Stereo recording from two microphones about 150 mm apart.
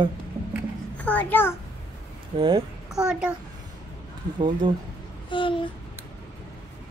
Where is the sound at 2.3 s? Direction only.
30° right (ahead or behind).